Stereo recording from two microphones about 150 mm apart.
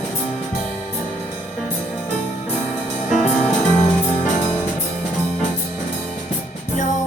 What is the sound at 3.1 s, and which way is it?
Music, 55° left (ahead or behind).